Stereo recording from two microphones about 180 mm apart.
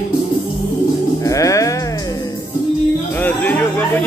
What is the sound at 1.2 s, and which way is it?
Music, 20° left (ahead or behind).